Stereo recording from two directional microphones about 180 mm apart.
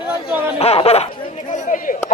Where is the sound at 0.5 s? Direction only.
35° left (ahead or behind).